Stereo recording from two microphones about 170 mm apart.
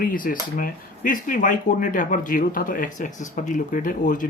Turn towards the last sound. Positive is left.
turn(degrees=50)  # may be behind; listen again after turning